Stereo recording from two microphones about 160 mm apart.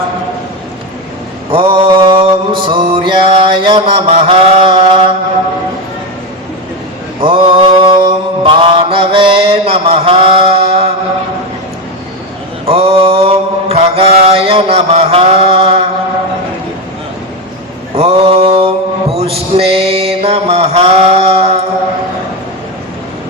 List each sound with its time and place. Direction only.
1.5 s mantra: 35° right (ahead or behind)
7.2 s mantra: 35° right (ahead or behind)
12.6 s mantra: 35° right (ahead or behind)
17.9 s mantra: 40° right (ahead or behind)